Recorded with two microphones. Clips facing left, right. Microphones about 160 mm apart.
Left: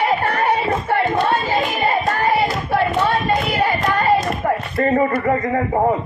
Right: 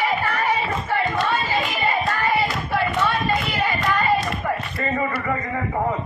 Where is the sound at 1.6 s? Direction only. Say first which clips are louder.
Left 4 dB; 40° left (ahead or behind).